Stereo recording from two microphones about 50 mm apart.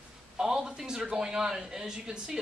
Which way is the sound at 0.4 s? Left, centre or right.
Centre.